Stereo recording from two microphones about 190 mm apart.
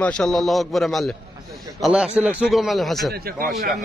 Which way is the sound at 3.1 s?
55° right (ahead or behind).